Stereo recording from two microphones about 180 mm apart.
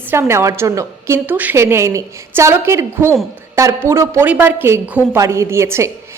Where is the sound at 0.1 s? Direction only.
15° right (ahead or behind).